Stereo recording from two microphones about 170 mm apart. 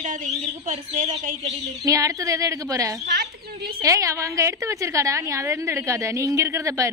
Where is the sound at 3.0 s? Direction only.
70° right (ahead or behind).